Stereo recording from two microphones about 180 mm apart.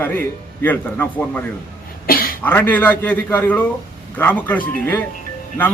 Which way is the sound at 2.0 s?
55° left (ahead or behind).